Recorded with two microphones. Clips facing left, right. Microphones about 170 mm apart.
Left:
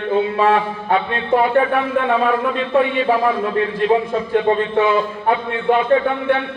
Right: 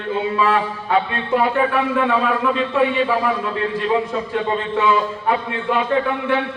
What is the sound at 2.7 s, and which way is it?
A man's voice, 50° left (ahead or behind).